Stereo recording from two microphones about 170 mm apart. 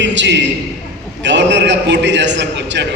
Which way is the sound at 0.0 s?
90° right.